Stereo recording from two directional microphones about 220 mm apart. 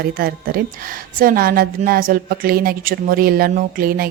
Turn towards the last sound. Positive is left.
turn(degrees=-40)  # may be behind; listen again after turning